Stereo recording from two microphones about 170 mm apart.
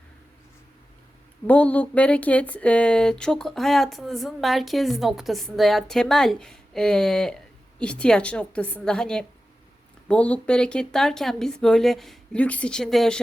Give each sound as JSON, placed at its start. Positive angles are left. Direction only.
{"t": 1.5, "sound": "a woman's voice", "side_deg": 10}